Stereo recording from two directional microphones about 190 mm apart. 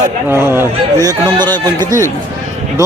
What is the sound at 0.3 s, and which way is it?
A man's voice, 10° right (ahead or behind).